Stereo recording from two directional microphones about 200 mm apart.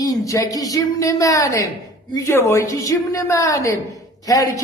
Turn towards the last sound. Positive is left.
turn(degrees=15)  # may be behind; listen again after turning